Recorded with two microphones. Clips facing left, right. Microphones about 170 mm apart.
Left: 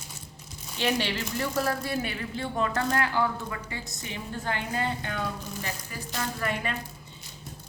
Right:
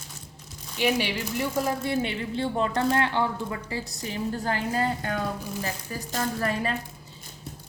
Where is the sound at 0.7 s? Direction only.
10° right (ahead or behind); by 6.7 s 35° right (ahead or behind).